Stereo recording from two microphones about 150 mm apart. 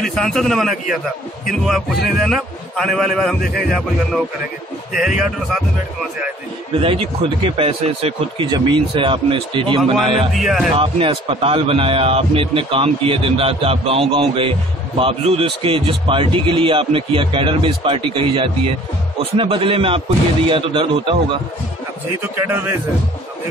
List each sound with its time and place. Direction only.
0.0 s a man's voice: centre (ahead or behind)
4.9 s a man's voice: 5° right (ahead or behind)
6.8 s a man's voice: 40° right (ahead or behind)
10.3 s a man's voice: centre (ahead or behind)
10.8 s a man's voice: 35° right (ahead or behind)
22.2 s a man's voice: 15° right (ahead or behind)